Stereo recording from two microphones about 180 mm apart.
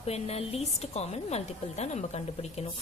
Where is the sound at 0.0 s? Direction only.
35° left (ahead or behind).